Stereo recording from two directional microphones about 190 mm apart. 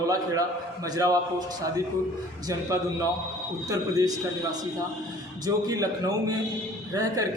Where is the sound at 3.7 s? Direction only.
20° right (ahead or behind).